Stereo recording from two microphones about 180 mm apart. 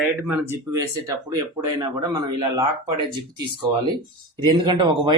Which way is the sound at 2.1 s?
25° right (ahead or behind).